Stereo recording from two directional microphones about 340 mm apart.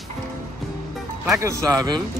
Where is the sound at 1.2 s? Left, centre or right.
Centre.